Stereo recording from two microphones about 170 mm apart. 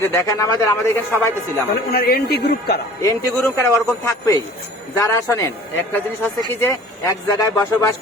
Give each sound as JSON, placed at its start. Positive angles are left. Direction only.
{"t": 0.1, "sound": "a man's voice", "side_deg": 15}
{"t": 1.9, "sound": "speech", "side_deg": 65}
{"t": 3.0, "sound": "a man's voice", "side_deg": 15}